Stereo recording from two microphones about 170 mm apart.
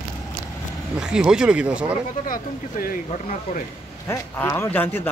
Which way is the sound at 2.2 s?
55° left (ahead or behind).